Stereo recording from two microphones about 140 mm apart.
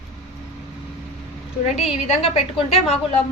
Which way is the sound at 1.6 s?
50° left (ahead or behind).